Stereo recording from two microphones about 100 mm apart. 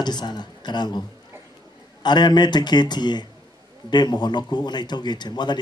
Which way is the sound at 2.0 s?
45° left (ahead or behind).